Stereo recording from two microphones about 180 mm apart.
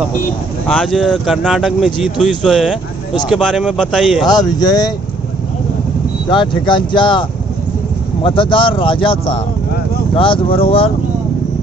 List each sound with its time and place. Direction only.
0.7 s speech: centre (ahead or behind)
4.3 s speech: 20° left (ahead or behind)
6.2 s speech: 25° left (ahead or behind)